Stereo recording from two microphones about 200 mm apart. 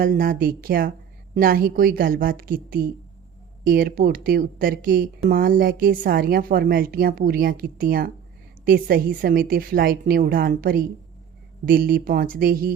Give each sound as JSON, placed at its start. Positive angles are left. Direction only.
{"t": 0.0, "sound": "a woman's voice", "side_deg": -45}